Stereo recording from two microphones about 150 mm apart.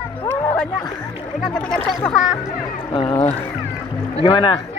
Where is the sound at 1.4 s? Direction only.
5° left (ahead or behind).